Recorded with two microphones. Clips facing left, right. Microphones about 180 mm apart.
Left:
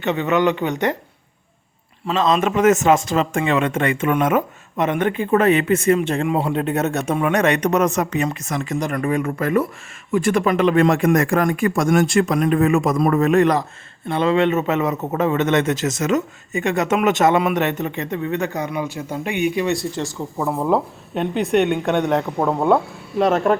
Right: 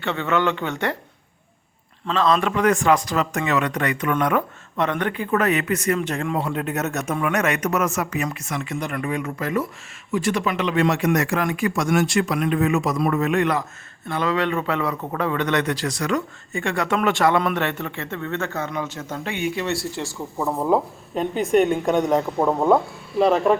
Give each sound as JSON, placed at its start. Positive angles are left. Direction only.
{"t": 0.0, "sound": "a man's voice", "side_deg": 20}
{"t": 2.0, "sound": "a man's voice", "side_deg": 20}
{"t": 14.1, "sound": "a man's voice", "side_deg": 25}
{"t": 20.4, "sound": "speech", "side_deg": 0}